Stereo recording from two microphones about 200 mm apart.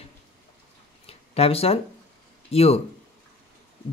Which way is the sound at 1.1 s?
30° left (ahead or behind).